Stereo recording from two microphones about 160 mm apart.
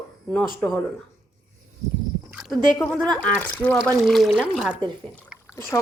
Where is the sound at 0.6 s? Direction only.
5° left (ahead or behind).